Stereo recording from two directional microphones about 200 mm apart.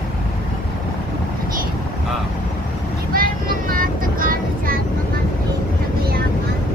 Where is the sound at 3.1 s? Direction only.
45° right (ahead or behind).